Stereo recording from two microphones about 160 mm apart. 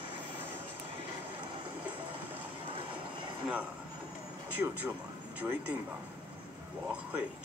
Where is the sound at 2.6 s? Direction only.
35° right (ahead or behind).